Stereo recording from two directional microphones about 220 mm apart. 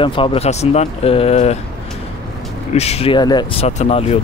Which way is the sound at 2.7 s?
30° left (ahead or behind).